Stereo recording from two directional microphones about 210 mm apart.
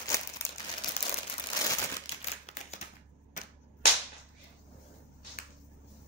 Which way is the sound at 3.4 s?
35° left (ahead or behind).